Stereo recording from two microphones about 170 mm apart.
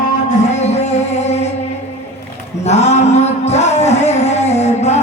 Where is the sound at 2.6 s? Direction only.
40° left (ahead or behind).